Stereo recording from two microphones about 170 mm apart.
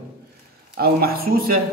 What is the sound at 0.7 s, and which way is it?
Speech, 65° right (ahead or behind).